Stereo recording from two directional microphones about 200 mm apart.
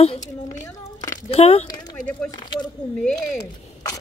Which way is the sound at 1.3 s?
30° left (ahead or behind).